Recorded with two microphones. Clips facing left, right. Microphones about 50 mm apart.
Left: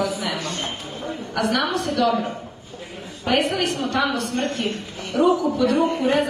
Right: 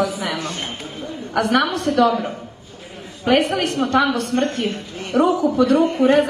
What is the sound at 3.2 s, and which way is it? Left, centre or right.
A woman's voice, right.